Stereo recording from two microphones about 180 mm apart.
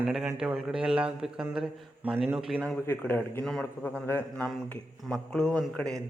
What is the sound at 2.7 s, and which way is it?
A man's voice, 10° left (ahead or behind).